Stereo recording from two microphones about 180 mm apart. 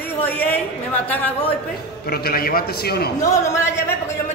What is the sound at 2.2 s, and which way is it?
Speech, 55° left (ahead or behind).